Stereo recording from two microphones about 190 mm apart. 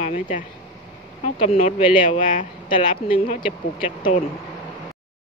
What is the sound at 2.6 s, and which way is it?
Speech, 30° left (ahead or behind).